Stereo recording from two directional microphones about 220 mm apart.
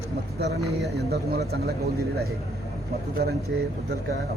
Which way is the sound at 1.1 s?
45° right (ahead or behind).